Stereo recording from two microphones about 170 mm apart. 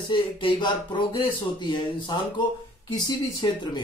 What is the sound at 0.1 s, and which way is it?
Speech, 30° left (ahead or behind).